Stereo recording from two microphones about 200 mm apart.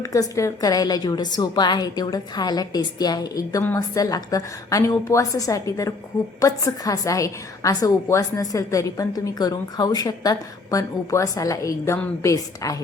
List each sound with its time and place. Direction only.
0.0 s a woman's voice: 15° left (ahead or behind)